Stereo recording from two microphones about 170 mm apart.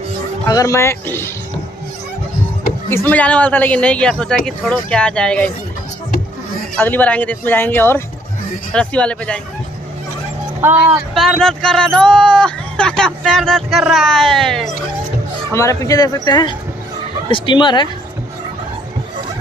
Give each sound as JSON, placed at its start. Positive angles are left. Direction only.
{"t": 0.5, "sound": "a man's voice", "side_deg": 20}
{"t": 2.9, "sound": "a man's voice", "side_deg": 10}
{"t": 6.7, "sound": "a man's voice", "side_deg": 10}
{"t": 10.6, "sound": "speech", "side_deg": -10}
{"t": 11.1, "sound": "speech", "side_deg": 0}
{"t": 15.5, "sound": "speech", "side_deg": 20}